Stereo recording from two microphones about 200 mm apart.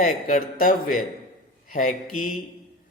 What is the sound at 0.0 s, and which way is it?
A man's voice, 45° left (ahead or behind).